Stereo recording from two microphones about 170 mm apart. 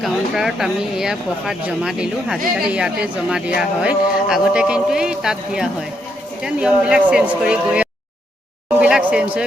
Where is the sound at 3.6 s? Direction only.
5° right (ahead or behind).